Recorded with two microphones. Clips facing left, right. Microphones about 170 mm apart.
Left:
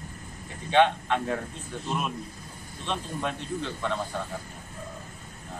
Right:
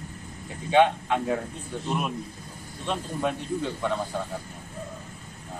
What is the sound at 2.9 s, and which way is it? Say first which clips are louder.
Speech: right 3 dB; 10° right (ahead or behind).